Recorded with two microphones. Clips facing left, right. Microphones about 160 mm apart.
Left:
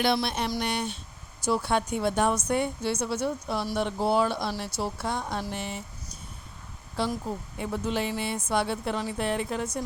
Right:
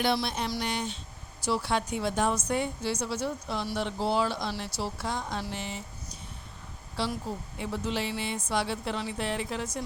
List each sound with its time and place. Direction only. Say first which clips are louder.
0.0 s a sound: left 2 dB; 70° left (ahead or behind)
0.5 s a woman's voice: left 2 dB; 60° left (ahead or behind)
6.9 s speech: left 3 dB; 50° left (ahead or behind)